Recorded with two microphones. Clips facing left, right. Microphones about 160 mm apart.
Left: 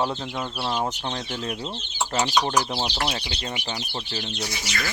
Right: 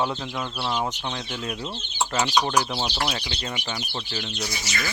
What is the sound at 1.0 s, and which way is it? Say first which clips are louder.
Speech: left 1 dB; 35° left (ahead or behind).